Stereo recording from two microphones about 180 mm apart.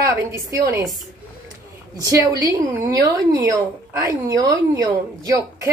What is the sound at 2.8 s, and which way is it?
A woman's voice, 20° right (ahead or behind).